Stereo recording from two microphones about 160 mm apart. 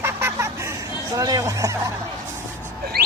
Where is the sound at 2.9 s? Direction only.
80° right.